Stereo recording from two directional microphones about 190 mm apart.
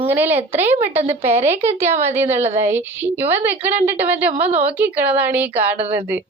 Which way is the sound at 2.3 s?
35° right (ahead or behind).